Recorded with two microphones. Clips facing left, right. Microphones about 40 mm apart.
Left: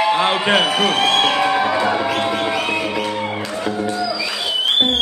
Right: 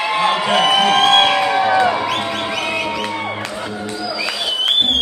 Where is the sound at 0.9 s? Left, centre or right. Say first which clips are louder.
Right 4 dB; right.